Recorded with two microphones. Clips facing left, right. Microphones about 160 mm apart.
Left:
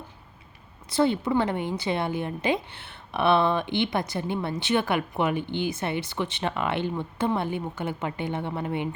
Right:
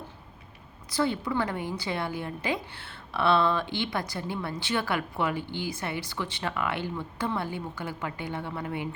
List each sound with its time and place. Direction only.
0.9 s a woman's voice: 25° left (ahead or behind)